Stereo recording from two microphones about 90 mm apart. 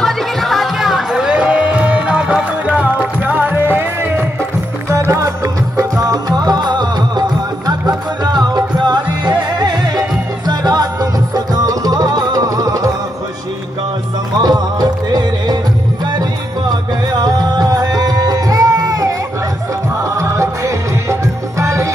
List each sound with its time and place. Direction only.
0.0 s music: centre (ahead or behind); by 12.9 s 40° right (ahead or behind)
14.4 s music: 50° right (ahead or behind)